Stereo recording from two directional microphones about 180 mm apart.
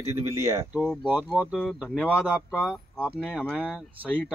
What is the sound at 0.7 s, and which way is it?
Speech, 5° left (ahead or behind).